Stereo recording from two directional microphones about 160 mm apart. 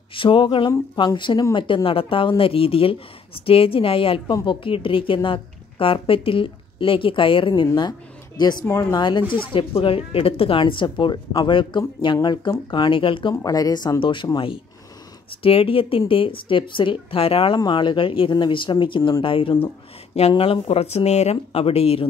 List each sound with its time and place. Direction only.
0.1 s a woman's voice: 35° left (ahead or behind)
13.3 s a woman's voice: 20° left (ahead or behind)